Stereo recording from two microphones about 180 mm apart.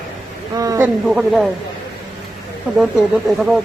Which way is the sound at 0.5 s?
20° right (ahead or behind).